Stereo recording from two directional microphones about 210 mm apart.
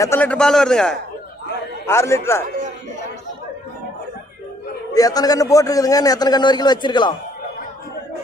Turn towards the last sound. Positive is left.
turn(degrees=20)  # may be behind; listen again after turning